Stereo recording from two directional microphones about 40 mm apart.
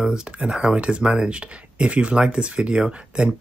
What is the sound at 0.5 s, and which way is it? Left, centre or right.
Speech, right.